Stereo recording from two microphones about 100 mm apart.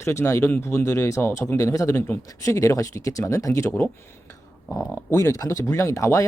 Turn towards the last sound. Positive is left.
turn(degrees=30)  # may be behind; listen again after turning